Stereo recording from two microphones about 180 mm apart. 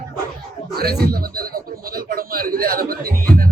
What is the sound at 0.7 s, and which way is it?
Speech, 60° right (ahead or behind).